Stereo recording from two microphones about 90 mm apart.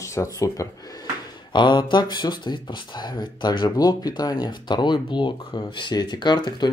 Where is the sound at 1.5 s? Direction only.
60° left (ahead or behind).